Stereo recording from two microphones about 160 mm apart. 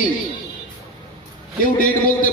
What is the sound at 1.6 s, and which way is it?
Speech, 55° left (ahead or behind).